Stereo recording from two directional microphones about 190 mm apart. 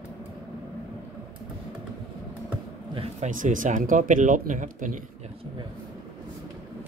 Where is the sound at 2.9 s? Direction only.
30° right (ahead or behind).